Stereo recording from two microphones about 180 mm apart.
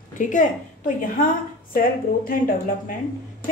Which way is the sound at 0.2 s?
45° left (ahead or behind).